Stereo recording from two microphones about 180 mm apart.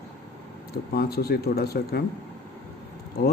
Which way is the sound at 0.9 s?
60° left (ahead or behind).